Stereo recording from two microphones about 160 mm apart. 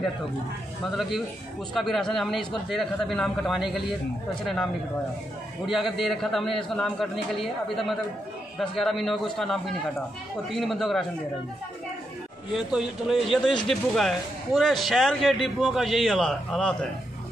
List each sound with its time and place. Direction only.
1.7 s speech: centre (ahead or behind)
5.7 s speech: centre (ahead or behind)
12.5 s speech: 5° right (ahead or behind)